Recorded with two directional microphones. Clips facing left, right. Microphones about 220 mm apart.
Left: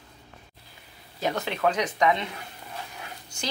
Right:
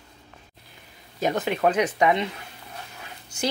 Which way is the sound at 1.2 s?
20° right (ahead or behind).